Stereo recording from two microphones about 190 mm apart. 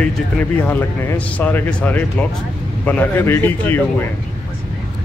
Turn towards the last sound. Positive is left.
turn(degrees=10)  # may be behind; listen again after turning